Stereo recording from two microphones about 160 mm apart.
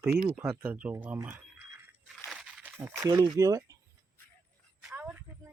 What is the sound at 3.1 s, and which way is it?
Speech, 25° right (ahead or behind).